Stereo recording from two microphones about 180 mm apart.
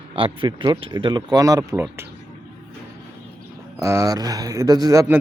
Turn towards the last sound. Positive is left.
turn(degrees=-15)  # may be behind; listen again after turning